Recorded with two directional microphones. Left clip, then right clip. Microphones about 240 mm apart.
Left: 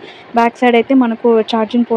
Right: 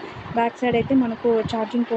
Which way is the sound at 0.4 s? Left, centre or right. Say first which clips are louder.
Left 10 dB; left.